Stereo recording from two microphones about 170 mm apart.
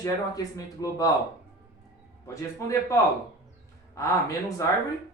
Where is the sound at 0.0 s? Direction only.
20° left (ahead or behind).